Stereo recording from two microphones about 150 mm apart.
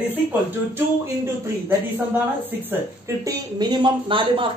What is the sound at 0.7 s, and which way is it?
Speech, 15° right (ahead or behind).